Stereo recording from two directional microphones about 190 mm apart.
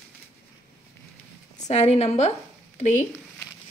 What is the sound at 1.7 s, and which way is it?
Speech, 35° left (ahead or behind).